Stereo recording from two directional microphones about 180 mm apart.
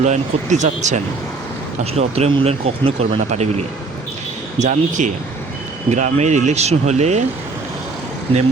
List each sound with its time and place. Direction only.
0.0 s speech: 40° right (ahead or behind)
4.6 s speech: 45° right (ahead or behind)